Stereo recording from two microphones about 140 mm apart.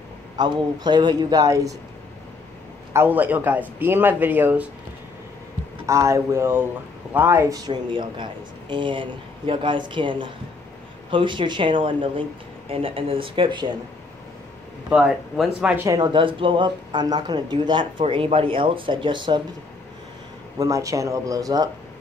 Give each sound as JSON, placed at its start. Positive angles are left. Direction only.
{"t": 0.4, "sound": "speech", "side_deg": -30}
{"t": 2.9, "sound": "a man's voice", "side_deg": -15}
{"t": 5.9, "sound": "speech", "side_deg": -20}
{"t": 14.9, "sound": "speech", "side_deg": -5}
{"t": 15.7, "sound": "speech", "side_deg": -20}
{"t": 20.5, "sound": "speech", "side_deg": -25}